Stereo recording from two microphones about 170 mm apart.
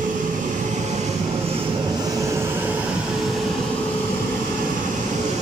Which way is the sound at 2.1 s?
15° right (ahead or behind).